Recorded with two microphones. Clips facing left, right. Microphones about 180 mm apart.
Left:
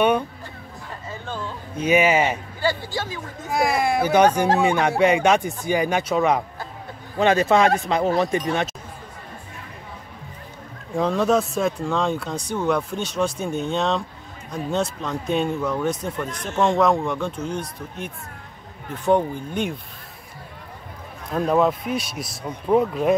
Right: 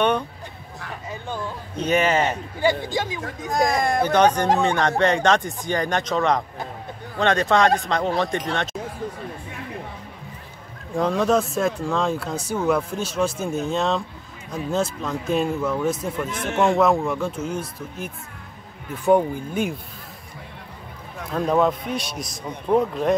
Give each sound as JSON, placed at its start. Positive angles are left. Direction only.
{"t": 1.2, "sound": "speech", "side_deg": -15}
{"t": 1.8, "sound": "speech", "side_deg": 10}
{"t": 2.6, "sound": "speech", "side_deg": -20}
{"t": 3.4, "sound": "speech", "side_deg": 5}
{"t": 11.0, "sound": "speech", "side_deg": 0}
{"t": 21.5, "sound": "speech", "side_deg": 5}